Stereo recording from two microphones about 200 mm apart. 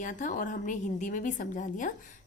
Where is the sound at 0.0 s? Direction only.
40° left (ahead or behind).